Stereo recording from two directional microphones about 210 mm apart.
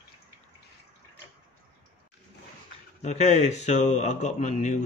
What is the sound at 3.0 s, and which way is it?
A man's voice, 30° left (ahead or behind).